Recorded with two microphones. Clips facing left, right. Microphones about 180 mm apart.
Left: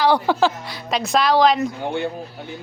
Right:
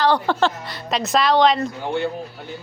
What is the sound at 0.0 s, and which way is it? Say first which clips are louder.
A woman's voice: left 1 dB; 10° left (ahead or behind).